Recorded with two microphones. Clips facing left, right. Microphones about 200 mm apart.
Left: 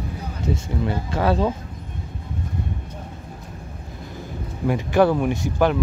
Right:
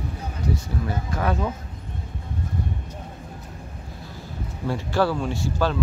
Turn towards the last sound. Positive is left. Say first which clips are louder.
# left 4 dB
turn(degrees=15)  # may be behind; listen again after turning